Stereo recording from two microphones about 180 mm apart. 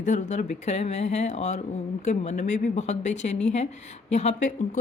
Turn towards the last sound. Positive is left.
turn(degrees=45)  # may be behind; listen again after turning